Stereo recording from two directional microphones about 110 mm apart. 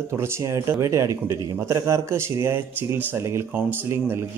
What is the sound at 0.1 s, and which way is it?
A man's voice, 25° right (ahead or behind).